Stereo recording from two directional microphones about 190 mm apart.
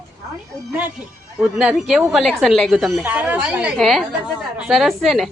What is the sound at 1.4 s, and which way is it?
A woman's voice, centre (ahead or behind).